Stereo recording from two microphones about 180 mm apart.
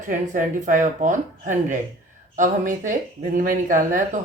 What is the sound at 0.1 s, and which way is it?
Speech, 45° right (ahead or behind).